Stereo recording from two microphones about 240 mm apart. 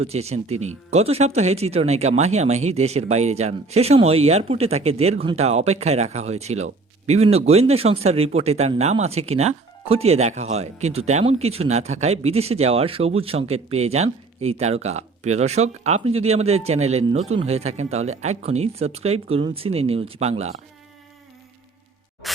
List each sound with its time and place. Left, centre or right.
0.0 s speech: right